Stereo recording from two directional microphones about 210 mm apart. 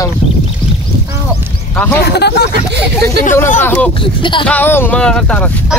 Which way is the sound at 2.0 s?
50° left (ahead or behind).